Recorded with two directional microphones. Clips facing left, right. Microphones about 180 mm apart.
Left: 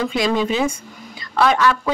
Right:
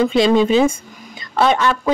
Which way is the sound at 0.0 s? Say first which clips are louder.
Right 6 dB; 25° right (ahead or behind).